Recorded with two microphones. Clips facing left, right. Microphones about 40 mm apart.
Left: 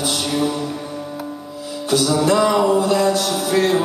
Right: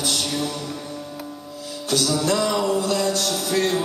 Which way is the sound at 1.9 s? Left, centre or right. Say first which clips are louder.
Left 5 dB; centre.